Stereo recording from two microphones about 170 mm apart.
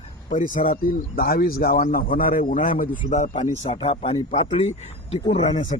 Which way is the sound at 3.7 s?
30° left (ahead or behind).